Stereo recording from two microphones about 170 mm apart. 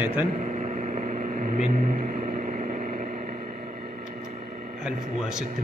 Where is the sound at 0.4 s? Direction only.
45° right (ahead or behind).